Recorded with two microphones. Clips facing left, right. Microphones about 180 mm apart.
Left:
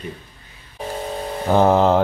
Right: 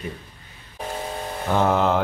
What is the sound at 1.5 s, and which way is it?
Mantra, 35° left (ahead or behind).